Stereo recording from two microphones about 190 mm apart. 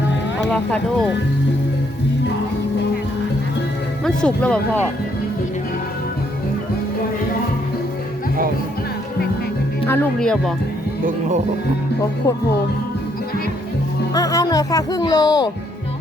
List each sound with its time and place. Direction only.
0.4 s speech: 5° left (ahead or behind)
4.0 s speech: 5° left (ahead or behind)
9.9 s speech: 5° left (ahead or behind)
14.1 s speech: 20° left (ahead or behind)